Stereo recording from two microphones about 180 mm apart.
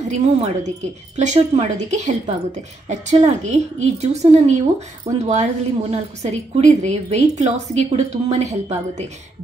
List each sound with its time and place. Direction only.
0.1 s a woman's voice: 40° right (ahead or behind)